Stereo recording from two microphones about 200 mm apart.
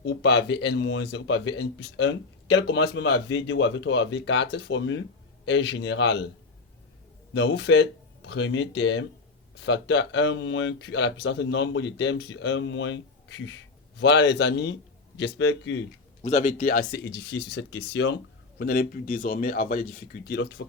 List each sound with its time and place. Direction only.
0.0 s speech: 60° left (ahead or behind)
7.3 s speech: 65° left (ahead or behind)
15.2 s speech: 70° left (ahead or behind)
16.2 s speech: 35° left (ahead or behind); by 18.2 s 60° left (ahead or behind)
18.6 s speech: 50° left (ahead or behind)